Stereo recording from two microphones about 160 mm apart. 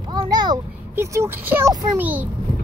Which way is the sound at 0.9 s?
15° right (ahead or behind).